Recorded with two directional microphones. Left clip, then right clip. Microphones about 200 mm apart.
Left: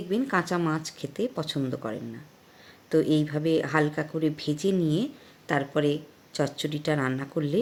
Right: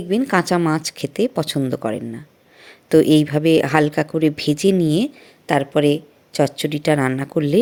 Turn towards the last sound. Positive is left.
turn(degrees=-30)  # may be behind; listen again after turning